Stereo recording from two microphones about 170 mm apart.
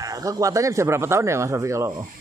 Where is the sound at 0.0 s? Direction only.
20° right (ahead or behind).